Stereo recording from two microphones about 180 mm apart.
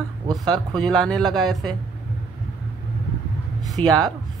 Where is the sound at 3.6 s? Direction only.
20° right (ahead or behind).